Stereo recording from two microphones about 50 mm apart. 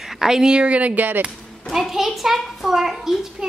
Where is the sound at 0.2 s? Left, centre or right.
Centre; by 1.3 s right.